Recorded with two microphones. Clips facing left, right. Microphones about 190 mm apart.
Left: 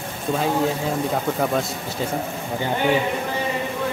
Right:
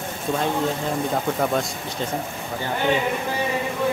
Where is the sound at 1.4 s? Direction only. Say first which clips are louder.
Even; centre (ahead or behind).